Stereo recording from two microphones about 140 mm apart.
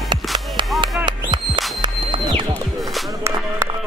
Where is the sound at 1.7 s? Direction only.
35° right (ahead or behind).